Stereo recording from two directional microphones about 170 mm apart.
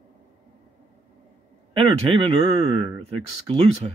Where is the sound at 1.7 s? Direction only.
35° right (ahead or behind).